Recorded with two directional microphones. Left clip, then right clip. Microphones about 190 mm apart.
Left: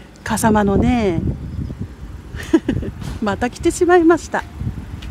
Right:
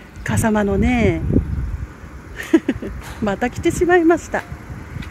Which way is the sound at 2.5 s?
15° left (ahead or behind).